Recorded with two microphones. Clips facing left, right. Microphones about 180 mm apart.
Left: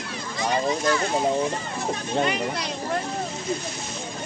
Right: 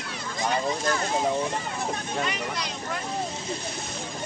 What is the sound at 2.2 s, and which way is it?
Speech, 35° left (ahead or behind).